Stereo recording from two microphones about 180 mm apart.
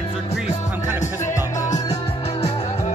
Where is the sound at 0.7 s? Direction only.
10° right (ahead or behind).